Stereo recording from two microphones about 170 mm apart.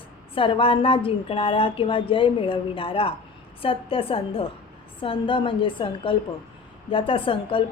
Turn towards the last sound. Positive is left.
turn(degrees=30)  # may be behind; listen again after turning